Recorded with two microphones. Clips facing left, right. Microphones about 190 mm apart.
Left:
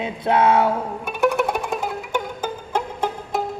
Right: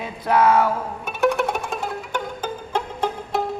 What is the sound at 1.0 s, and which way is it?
Music, 10° left (ahead or behind).